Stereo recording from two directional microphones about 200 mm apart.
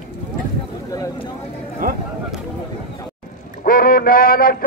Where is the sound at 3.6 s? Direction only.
45° left (ahead or behind).